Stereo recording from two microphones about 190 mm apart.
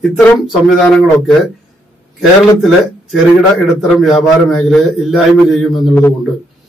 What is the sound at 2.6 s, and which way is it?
A man's voice, centre (ahead or behind).